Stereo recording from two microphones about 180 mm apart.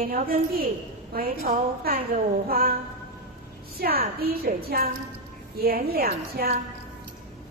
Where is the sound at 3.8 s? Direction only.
60° right (ahead or behind).